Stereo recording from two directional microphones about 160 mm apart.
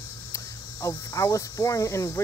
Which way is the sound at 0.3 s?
20° left (ahead or behind).